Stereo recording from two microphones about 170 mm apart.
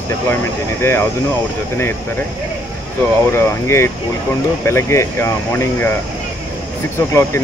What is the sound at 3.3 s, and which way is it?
Speech, 15° left (ahead or behind).